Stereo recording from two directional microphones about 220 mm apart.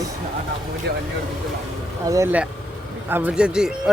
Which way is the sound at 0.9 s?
45° right (ahead or behind).